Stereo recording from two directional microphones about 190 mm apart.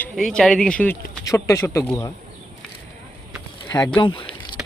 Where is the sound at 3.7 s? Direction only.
20° left (ahead or behind).